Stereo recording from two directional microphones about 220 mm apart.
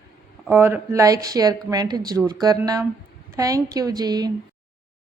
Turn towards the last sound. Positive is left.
turn(degrees=-15)  # may be behind; listen again after turning